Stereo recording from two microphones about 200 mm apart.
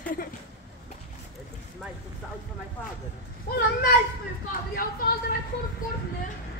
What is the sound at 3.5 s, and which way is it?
A child's voice, 55° left (ahead or behind).